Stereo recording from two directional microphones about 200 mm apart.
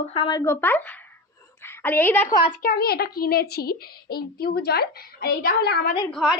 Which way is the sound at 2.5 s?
45° left (ahead or behind).